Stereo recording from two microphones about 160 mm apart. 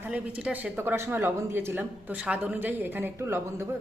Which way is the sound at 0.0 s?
5° right (ahead or behind).